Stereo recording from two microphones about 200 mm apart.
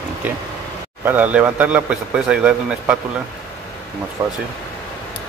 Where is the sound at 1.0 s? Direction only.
10° right (ahead or behind).